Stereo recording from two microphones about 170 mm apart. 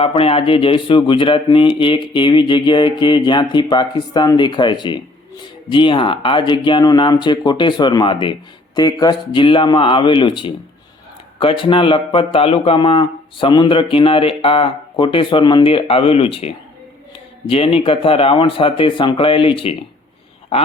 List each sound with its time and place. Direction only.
0.0 s speech: 35° left (ahead or behind)